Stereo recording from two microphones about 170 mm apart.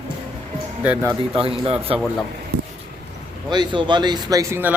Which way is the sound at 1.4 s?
35° right (ahead or behind).